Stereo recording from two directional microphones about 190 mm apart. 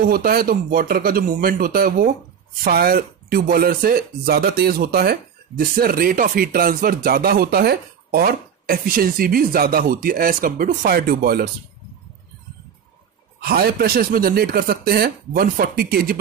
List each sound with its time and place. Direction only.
0.1 s speech: 50° right (ahead or behind)
13.4 s speech: 55° right (ahead or behind)